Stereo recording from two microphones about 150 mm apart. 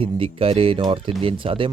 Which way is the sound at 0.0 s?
40° right (ahead or behind).